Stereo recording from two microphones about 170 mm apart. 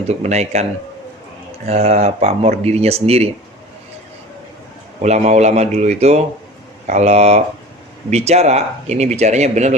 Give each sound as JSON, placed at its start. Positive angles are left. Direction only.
{"t": 0.1, "sound": "speech", "side_deg": -40}
{"t": 5.0, "sound": "speech", "side_deg": -40}